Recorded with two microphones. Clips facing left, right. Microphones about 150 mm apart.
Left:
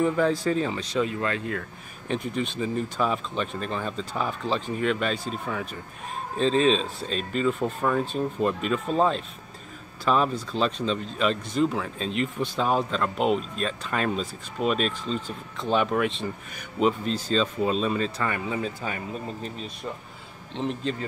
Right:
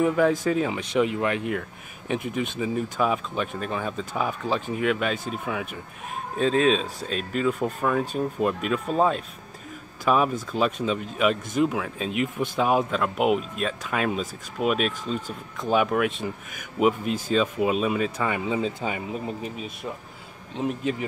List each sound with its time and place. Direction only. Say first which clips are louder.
0.0 s speech: right 2 dB; 10° right (ahead or behind)